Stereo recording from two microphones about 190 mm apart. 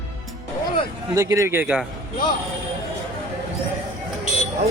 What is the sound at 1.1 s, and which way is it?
Speech, 15° right (ahead or behind).